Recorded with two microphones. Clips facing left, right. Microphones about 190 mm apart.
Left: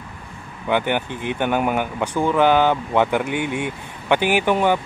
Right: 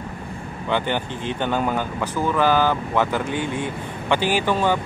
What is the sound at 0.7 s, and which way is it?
Speech, 15° left (ahead or behind).